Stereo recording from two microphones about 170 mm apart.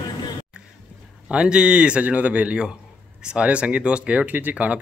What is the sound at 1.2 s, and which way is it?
Speech, 5° right (ahead or behind).